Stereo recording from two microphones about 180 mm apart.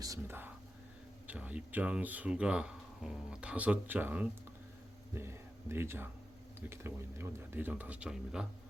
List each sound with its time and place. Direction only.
0.0 s speech: 15° right (ahead or behind)